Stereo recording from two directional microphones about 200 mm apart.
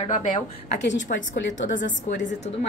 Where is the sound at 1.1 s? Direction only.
45° left (ahead or behind).